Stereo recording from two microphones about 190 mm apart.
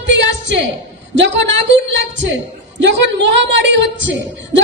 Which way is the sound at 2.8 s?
70° right (ahead or behind).